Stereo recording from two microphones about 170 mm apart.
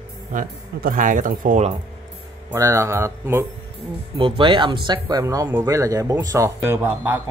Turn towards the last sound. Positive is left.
turn(degrees=-10)  # may be behind; listen again after turning